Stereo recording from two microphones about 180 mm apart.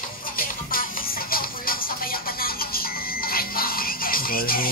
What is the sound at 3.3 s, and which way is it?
Music, 55° left (ahead or behind).